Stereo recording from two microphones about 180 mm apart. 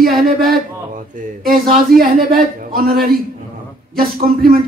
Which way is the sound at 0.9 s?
50° right (ahead or behind).